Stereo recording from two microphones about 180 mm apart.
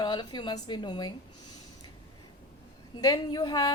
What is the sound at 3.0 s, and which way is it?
Speech, 20° left (ahead or behind).